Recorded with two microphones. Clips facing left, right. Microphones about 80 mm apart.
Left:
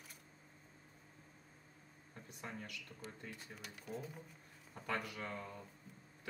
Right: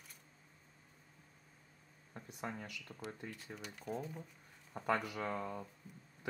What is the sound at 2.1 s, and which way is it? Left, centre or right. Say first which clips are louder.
Speech: right 5 dB; right.